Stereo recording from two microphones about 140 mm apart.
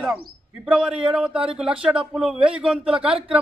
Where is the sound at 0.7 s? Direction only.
5° right (ahead or behind).